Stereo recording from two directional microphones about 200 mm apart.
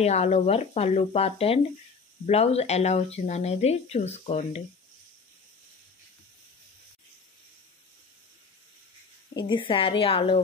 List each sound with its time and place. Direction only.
0.0 s speech: 35° left (ahead or behind)
9.3 s a woman's voice: 20° left (ahead or behind)